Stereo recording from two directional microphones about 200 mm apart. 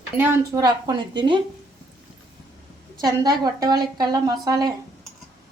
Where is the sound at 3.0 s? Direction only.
20° right (ahead or behind).